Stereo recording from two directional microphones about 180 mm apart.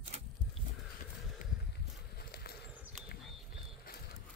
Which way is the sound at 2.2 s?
60° left (ahead or behind).